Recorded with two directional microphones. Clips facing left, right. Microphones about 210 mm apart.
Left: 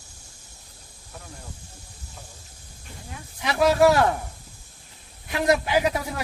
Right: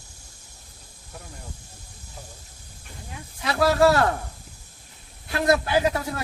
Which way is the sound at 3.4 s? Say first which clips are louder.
Left 1 dB; 20° left (ahead or behind).